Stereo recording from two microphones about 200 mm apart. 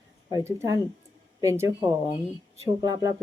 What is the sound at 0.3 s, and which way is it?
Speech, 15° right (ahead or behind).